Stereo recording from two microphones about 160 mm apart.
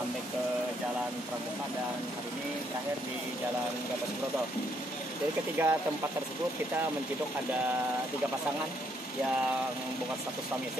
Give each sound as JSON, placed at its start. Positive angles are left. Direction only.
{"t": 5.6, "sound": "speech", "side_deg": -10}